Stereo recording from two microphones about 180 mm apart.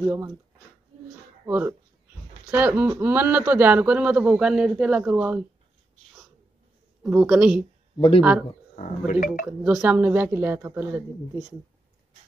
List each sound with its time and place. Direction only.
1.4 s speech: 10° right (ahead or behind)
7.0 s a woman's voice: 5° right (ahead or behind)
8.7 s speech: 45° left (ahead or behind)
9.6 s speech: 5° right (ahead or behind)